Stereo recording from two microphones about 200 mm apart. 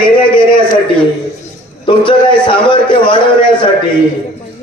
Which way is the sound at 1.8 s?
25° left (ahead or behind).